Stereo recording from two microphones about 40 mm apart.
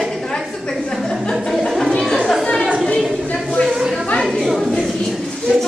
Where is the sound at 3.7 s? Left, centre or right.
Centre.